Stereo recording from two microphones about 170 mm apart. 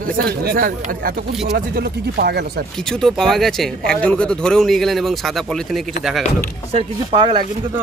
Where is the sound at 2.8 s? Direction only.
5° left (ahead or behind).